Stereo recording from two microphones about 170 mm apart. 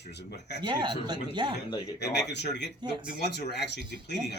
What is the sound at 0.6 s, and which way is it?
Speech, 30° right (ahead or behind).